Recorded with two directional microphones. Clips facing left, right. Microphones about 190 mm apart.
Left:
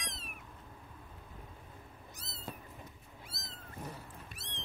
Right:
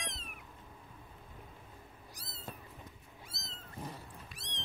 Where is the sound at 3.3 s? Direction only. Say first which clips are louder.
Even; 20° right (ahead or behind).